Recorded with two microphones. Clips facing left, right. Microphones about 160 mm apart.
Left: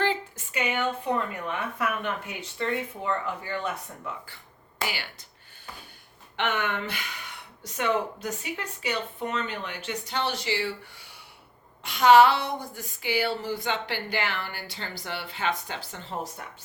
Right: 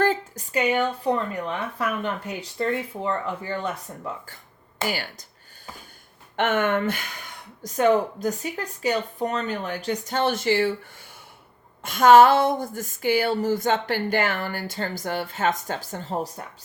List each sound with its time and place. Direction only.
0.0 s speech: 40° right (ahead or behind)
4.9 s speech: 45° right (ahead or behind)
6.3 s speech: 50° right (ahead or behind)
11.8 s speech: 45° right (ahead or behind)